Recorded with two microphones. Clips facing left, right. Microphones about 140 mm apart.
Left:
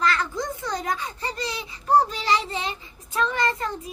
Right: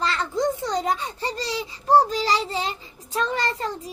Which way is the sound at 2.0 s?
35° right (ahead or behind).